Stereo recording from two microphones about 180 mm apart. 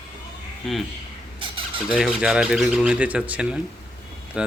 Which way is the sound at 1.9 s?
5° right (ahead or behind).